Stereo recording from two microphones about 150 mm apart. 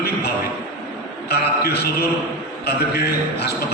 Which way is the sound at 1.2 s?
90° left.